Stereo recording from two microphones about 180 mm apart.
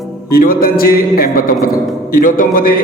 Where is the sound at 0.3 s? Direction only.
55° left (ahead or behind).